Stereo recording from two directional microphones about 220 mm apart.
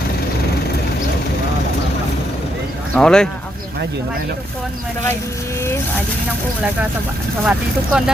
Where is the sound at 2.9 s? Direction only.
5° left (ahead or behind).